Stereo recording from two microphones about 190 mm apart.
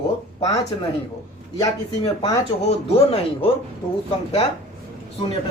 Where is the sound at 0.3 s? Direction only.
20° left (ahead or behind).